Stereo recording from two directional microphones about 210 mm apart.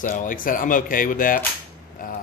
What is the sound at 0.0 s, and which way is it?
Speech, 40° left (ahead or behind).